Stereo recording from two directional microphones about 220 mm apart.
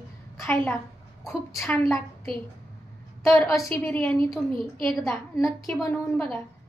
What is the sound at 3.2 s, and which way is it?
A woman's voice, centre (ahead or behind).